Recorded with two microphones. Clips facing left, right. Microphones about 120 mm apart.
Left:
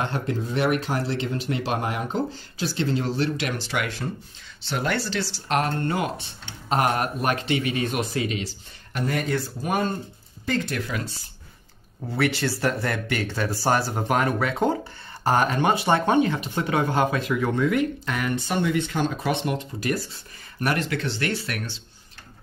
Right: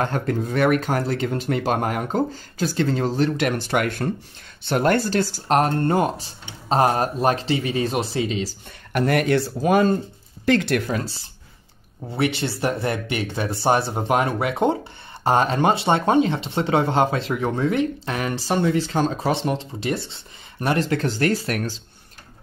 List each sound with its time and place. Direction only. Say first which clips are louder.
0.0 s speech: right 4 dB; 50° right (ahead or behind); by 8.5 s 30° right (ahead or behind)
8.9 s speech: right 7 dB; 70° right (ahead or behind); by 9.8 s 90° right
10.4 s speech: right 7 dB; 70° right (ahead or behind)
10.9 s speech: right 5 dB; 35° right (ahead or behind)
12.2 s speech: right 1 dB; 20° right (ahead or behind); by 21.7 s 40° right (ahead or behind)